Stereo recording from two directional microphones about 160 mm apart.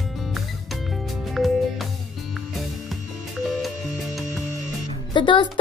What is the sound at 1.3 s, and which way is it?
Music, centre (ahead or behind).